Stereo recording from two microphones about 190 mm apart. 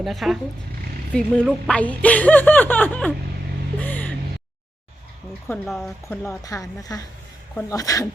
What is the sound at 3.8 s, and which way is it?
Music, 10° left (ahead or behind).